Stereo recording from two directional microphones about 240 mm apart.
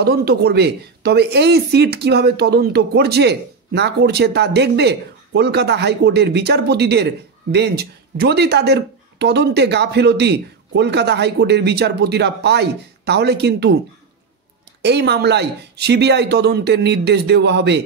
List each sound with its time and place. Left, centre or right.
0.0 s speech: right
14.8 s speech: right